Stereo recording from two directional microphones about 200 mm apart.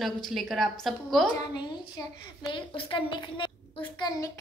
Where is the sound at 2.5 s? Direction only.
25° left (ahead or behind).